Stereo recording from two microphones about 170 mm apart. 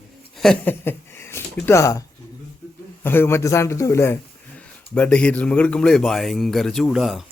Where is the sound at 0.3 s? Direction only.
5° left (ahead or behind).